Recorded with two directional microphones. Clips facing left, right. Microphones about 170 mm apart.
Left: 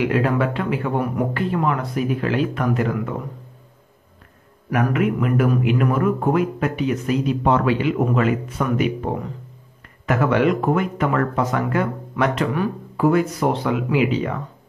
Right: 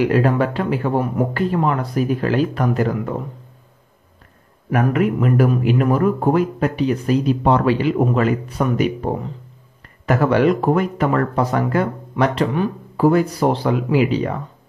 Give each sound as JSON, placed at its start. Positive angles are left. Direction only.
{"t": 0.0, "sound": "speech", "side_deg": -40}
{"t": 4.7, "sound": "speech", "side_deg": -35}
{"t": 10.0, "sound": "speech", "side_deg": -35}